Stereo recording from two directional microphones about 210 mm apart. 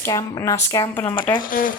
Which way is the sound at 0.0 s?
15° left (ahead or behind).